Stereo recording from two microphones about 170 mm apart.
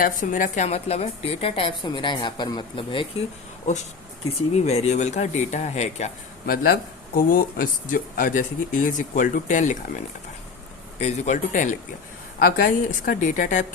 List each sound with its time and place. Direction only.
0.0 s a woman's voice: 50° left (ahead or behind); by 3.1 s 30° left (ahead or behind)
4.5 s a woman's voice: 40° left (ahead or behind)
6.4 s speech: 55° left (ahead or behind)
11.0 s speech: 45° left (ahead or behind)